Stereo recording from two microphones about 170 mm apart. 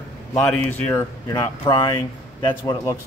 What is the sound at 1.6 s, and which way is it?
Speech, 30° left (ahead or behind).